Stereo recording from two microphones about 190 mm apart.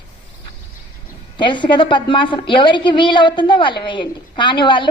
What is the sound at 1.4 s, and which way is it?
A woman's voice, 25° left (ahead or behind).